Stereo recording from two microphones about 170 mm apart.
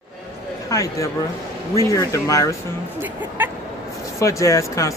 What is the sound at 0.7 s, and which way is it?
Speech, 20° left (ahead or behind).